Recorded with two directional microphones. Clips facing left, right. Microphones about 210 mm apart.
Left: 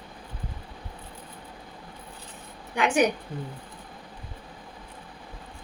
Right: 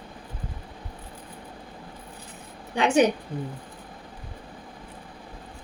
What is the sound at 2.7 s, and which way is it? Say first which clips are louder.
Speech: right 3 dB; 25° right (ahead or behind).